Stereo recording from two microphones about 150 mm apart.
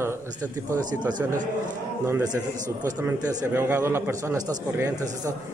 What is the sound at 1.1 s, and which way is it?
Speech, 60° right (ahead or behind).